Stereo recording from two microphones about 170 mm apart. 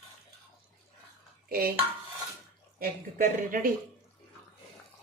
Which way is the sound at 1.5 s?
60° right (ahead or behind).